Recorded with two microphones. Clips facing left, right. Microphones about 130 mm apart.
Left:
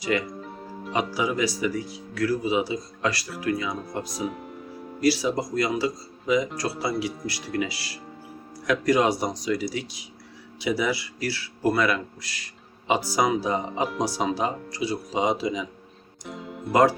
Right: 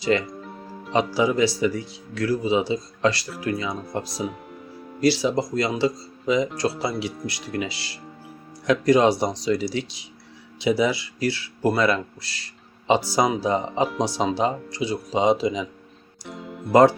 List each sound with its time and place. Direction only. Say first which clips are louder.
0.0 s speech: right 4 dB; 30° right (ahead or behind)
0.4 s music: left 1 dB; centre (ahead or behind)
1.1 s speech: right 5 dB; 30° right (ahead or behind)
4.1 s speech: right 1 dB; centre (ahead or behind)
4.9 s speech: right 2 dB; 25° right (ahead or behind)
16.2 s music: even; centre (ahead or behind)